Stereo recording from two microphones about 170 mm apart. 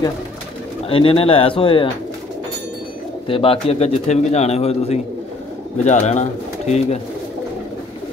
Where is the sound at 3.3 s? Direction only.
35° left (ahead or behind).